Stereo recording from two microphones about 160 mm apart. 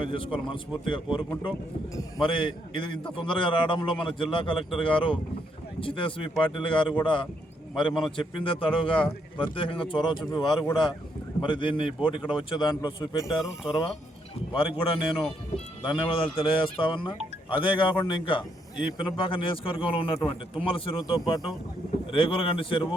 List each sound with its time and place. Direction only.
0.0 s speech: 30° left (ahead or behind)
2.2 s speech: 30° left (ahead or behind)
13.1 s speech: centre (ahead or behind)
14.5 s speech: 30° left (ahead or behind)